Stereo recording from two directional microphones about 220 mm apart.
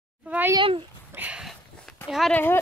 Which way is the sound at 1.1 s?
5° right (ahead or behind).